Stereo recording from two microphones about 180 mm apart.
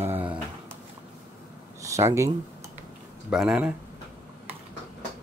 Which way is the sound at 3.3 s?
5° right (ahead or behind).